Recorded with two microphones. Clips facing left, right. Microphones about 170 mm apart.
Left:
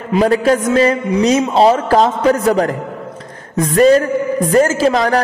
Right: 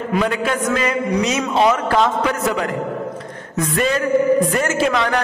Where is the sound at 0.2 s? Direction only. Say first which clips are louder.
Left 10 dB; 35° left (ahead or behind).